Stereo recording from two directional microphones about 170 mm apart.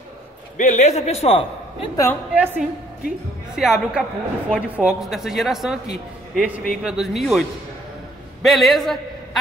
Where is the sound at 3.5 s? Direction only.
Centre (ahead or behind).